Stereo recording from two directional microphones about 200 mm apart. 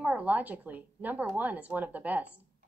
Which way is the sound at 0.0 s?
10° right (ahead or behind).